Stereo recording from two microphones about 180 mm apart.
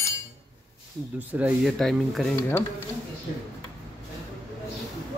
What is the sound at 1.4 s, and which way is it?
Speech, centre (ahead or behind).